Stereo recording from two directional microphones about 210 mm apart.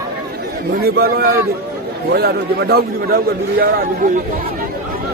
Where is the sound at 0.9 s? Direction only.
50° right (ahead or behind).